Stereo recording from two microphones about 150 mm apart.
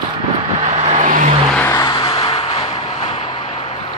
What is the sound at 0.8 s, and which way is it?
Vehicle, 50° right (ahead or behind).